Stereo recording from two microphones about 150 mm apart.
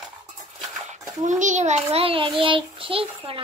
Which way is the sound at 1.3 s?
55° right (ahead or behind).